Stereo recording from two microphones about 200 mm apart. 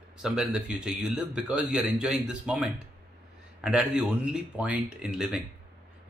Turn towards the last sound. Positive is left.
turn(degrees=-5)  # may be behind; listen again after turning